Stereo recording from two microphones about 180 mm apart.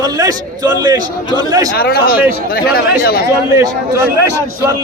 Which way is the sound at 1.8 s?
55° left (ahead or behind).